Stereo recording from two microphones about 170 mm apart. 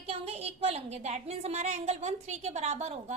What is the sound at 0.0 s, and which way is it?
A woman's voice, 35° right (ahead or behind).